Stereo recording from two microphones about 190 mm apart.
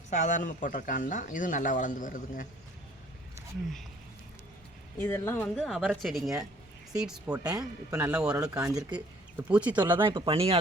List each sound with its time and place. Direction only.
0.1 s a man's voice: 40° left (ahead or behind)
4.9 s speech: 10° left (ahead or behind)
5.5 s a woman's voice: centre (ahead or behind)
7.3 s speech: 20° right (ahead or behind)
9.7 s speech: 25° right (ahead or behind)